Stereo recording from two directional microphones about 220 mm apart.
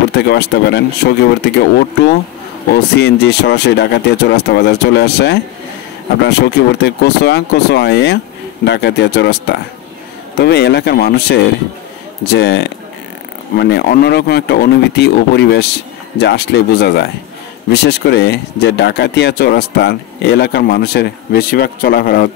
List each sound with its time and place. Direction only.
0.1 s speech: 50° left (ahead or behind)
2.7 s speech: 50° left (ahead or behind)